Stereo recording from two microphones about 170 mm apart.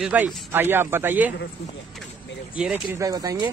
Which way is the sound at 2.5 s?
5° right (ahead or behind).